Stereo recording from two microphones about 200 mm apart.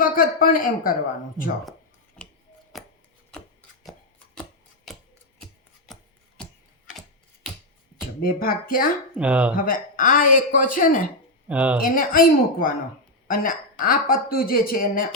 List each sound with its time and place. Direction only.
0.0 s a man's voice: 45° left (ahead or behind)
2.2 s a sound: 5° left (ahead or behind)
2.7 s chopping: centre (ahead or behind)
4.9 s a sound: centre (ahead or behind)
5.4 s chopping: centre (ahead or behind)
8.2 s speech: 45° left (ahead or behind)
9.1 s speech: 5° right (ahead or behind)
9.6 s speech: 45° left (ahead or behind)
11.4 s speech: 5° right (ahead or behind)
11.9 s speech: 45° left (ahead or behind)